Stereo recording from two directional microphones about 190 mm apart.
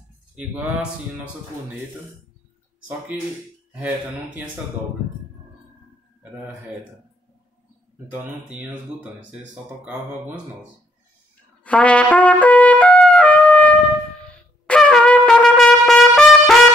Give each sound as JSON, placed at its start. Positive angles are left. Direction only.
{"t": 0.4, "sound": "speech", "side_deg": -5}
{"t": 8.1, "sound": "speech", "side_deg": -10}
{"t": 11.6, "sound": "trumpet", "side_deg": 5}